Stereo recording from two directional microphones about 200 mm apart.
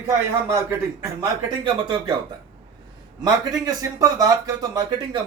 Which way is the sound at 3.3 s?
20° right (ahead or behind).